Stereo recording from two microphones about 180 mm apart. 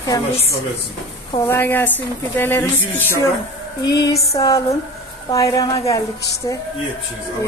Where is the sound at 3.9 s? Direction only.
20° left (ahead or behind).